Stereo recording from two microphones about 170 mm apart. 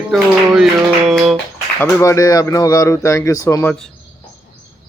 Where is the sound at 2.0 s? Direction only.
20° left (ahead or behind).